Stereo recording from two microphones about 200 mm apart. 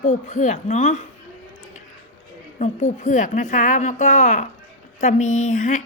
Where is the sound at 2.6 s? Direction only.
35° left (ahead or behind).